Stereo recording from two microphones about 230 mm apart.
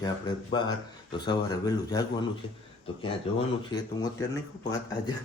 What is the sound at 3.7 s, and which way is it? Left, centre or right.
Speech, centre.